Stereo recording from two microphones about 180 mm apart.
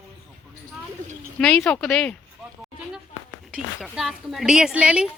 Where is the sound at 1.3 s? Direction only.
5° left (ahead or behind).